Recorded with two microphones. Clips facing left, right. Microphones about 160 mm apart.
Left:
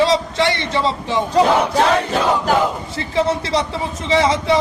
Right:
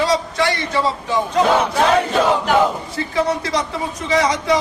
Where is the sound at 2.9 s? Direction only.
25° left (ahead or behind).